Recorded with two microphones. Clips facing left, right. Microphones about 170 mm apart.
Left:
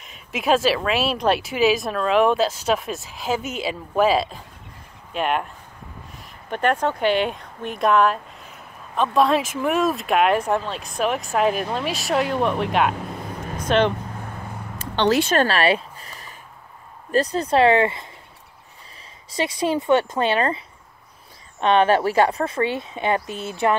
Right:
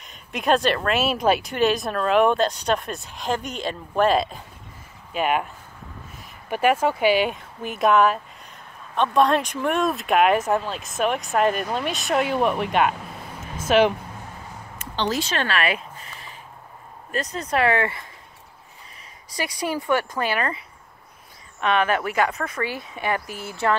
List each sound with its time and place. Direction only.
0.0 s speech: centre (ahead or behind)
15.0 s speech: 65° left (ahead or behind)
15.3 s a sound: 35° left (ahead or behind)
17.1 s speech: 35° left (ahead or behind)
19.3 s speech: 25° left (ahead or behind)